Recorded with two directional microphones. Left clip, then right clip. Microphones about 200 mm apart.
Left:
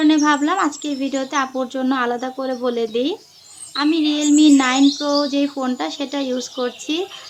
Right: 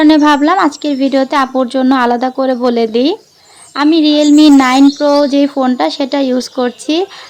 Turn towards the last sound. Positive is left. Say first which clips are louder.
# right 9 dB
turn(degrees=-35)  # may be behind; listen again after turning